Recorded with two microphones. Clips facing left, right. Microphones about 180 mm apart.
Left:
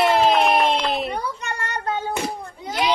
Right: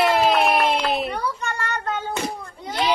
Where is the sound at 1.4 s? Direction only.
15° left (ahead or behind).